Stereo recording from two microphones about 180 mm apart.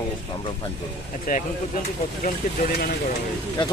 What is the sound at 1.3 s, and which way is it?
Speech, 50° left (ahead or behind).